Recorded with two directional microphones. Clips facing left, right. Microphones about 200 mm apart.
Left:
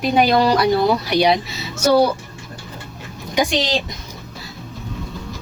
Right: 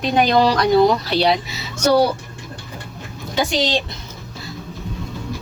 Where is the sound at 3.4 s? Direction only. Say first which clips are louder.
Left 2 dB; 15° left (ahead or behind).